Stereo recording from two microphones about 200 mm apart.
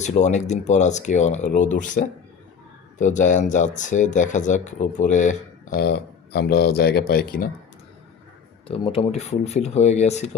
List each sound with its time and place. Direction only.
0.0 s speech: 35° left (ahead or behind)
5.8 s speech: 55° left (ahead or behind)
8.6 s speech: 30° left (ahead or behind)